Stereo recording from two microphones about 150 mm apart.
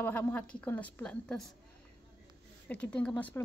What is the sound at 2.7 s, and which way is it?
Speech, 10° left (ahead or behind).